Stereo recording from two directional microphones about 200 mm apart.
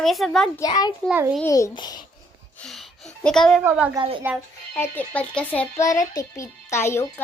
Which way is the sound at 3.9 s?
25° right (ahead or behind).